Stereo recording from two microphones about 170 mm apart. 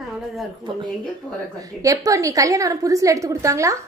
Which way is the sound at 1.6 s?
20° right (ahead or behind).